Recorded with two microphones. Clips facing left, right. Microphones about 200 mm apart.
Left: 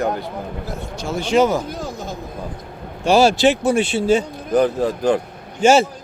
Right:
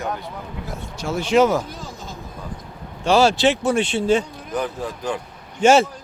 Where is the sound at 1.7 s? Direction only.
70° left (ahead or behind).